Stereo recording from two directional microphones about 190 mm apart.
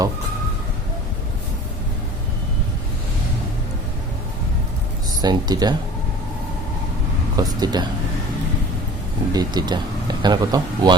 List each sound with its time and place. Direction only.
5.2 s speech: 20° right (ahead or behind)
7.3 s speech: 20° right (ahead or behind)
9.3 s speech: 20° right (ahead or behind)